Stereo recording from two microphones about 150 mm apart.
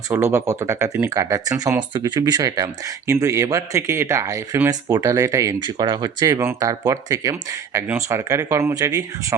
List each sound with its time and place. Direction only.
0.1 s speech: 15° right (ahead or behind)
5.6 s speech: 30° right (ahead or behind)